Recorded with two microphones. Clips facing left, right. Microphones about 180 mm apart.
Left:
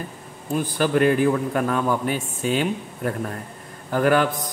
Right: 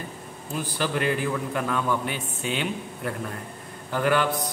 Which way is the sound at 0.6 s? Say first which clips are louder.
Left 7 dB; 50° left (ahead or behind).